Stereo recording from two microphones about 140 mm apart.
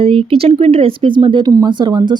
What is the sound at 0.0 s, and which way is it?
Speech, 40° right (ahead or behind).